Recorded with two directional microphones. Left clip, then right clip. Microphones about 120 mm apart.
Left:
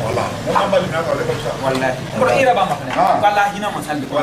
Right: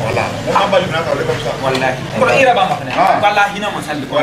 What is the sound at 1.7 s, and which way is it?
A man's voice, centre (ahead or behind).